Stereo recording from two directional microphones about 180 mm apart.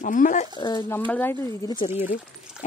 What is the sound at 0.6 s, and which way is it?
Speech, 25° left (ahead or behind).